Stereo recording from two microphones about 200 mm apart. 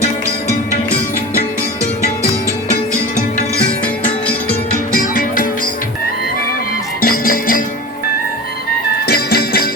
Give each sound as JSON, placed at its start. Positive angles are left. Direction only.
{"t": 7.0, "sound": "music", "side_deg": 45}
{"t": 9.0, "sound": "music", "side_deg": 50}